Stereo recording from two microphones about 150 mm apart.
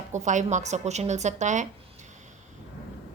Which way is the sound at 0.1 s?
55° right (ahead or behind).